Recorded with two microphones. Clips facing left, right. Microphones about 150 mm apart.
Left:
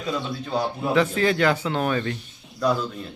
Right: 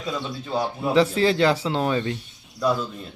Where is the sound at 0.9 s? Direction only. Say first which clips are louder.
Right 2 dB; 30° right (ahead or behind).